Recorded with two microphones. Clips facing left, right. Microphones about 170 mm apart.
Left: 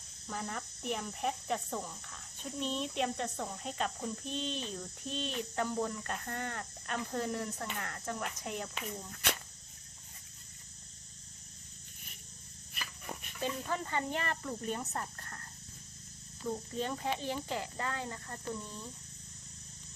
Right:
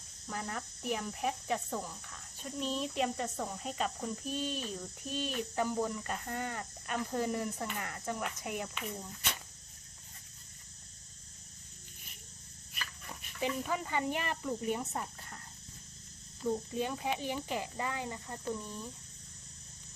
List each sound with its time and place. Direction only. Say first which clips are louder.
0.3 s speech: even; centre (ahead or behind)
13.4 s speech: right 2 dB; 10° right (ahead or behind)
16.5 s speech: right 2 dB; 10° right (ahead or behind)